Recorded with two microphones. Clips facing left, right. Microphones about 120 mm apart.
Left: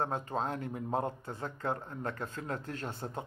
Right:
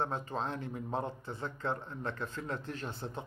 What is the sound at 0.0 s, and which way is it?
A man's voice, 40° left (ahead or behind).